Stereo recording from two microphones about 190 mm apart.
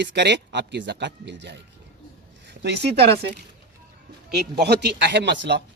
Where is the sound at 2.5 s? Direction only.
65° right (ahead or behind).